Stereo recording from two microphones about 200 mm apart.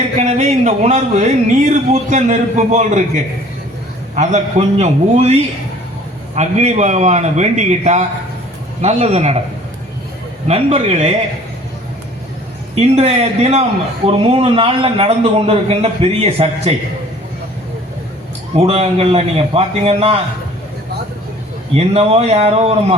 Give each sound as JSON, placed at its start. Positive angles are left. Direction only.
{"t": 0.2, "sound": "speech", "side_deg": -35}
{"t": 4.1, "sound": "speech", "side_deg": -35}
{"t": 10.5, "sound": "speech", "side_deg": -30}
{"t": 12.7, "sound": "a man's voice", "side_deg": -30}
{"t": 18.5, "sound": "a man's voice", "side_deg": -30}
{"t": 21.8, "sound": "speech", "side_deg": -30}